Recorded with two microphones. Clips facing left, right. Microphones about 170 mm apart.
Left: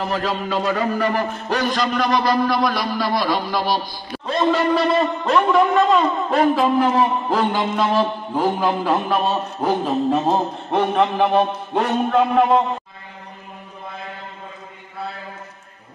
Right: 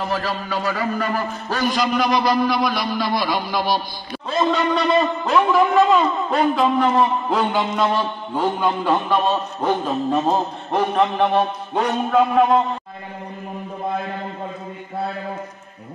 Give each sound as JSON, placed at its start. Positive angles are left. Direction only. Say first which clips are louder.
{"t": 0.1, "sound": "a man's voice", "louder": "left 2 dB", "side_deg": 20}
{"t": 1.6, "sound": "a man's voice", "louder": "right 2 dB", "side_deg": -5}